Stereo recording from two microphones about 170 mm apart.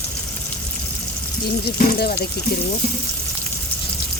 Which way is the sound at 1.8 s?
60° left (ahead or behind).